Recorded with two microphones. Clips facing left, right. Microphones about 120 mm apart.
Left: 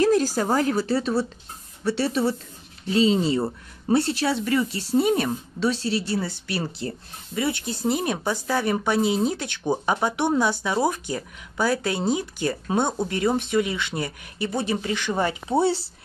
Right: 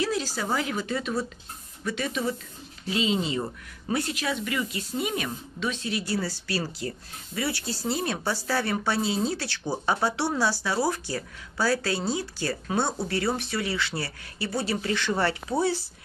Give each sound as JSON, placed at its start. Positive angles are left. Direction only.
{"t": 0.0, "sound": "speech", "side_deg": 45}